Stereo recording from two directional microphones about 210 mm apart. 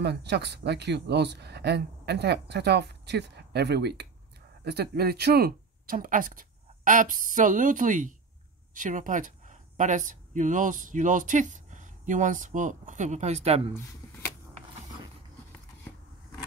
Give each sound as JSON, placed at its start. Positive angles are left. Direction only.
{"t": 0.0, "sound": "speech", "side_deg": -50}